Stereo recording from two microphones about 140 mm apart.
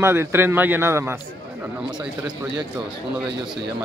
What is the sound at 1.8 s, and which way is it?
Speech, 30° right (ahead or behind).